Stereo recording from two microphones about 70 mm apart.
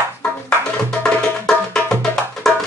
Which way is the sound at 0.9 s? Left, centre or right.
Centre.